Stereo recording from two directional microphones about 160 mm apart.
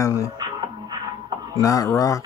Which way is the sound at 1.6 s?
20° left (ahead or behind).